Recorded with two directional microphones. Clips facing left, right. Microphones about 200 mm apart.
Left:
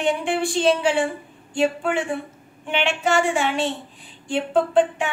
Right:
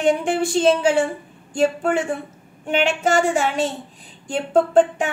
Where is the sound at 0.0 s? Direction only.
45° right (ahead or behind).